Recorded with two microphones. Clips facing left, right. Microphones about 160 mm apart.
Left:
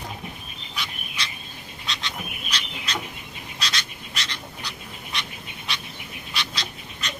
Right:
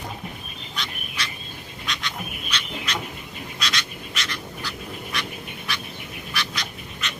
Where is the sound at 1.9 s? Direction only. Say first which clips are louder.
Right 1 dB; 30° left (ahead or behind).